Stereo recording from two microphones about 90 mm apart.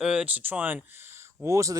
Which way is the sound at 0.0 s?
10° right (ahead or behind).